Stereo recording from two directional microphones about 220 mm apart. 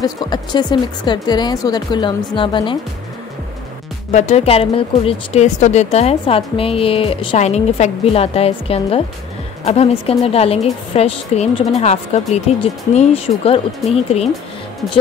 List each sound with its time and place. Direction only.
0.0 s speech: 20° left (ahead or behind)
4.1 s speech: 30° left (ahead or behind)